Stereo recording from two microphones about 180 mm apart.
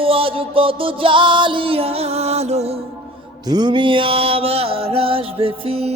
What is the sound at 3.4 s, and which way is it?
Music, 25° right (ahead or behind).